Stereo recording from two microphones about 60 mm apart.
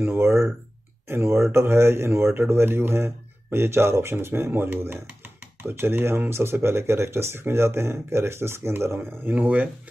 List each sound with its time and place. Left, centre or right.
0.0 s speech: right
9.3 s speech: right